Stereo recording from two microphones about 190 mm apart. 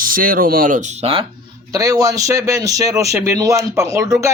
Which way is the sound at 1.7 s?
20° right (ahead or behind).